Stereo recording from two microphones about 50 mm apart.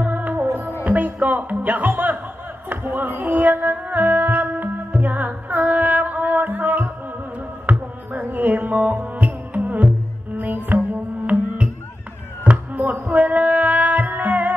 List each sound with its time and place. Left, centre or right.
0.0 s music: right
0.8 s speech: right
2.7 s music: right
7.7 s a sound: right
8.1 s music: right